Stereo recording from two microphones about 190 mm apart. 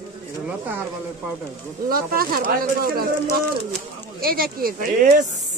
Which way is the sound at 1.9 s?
50° right (ahead or behind).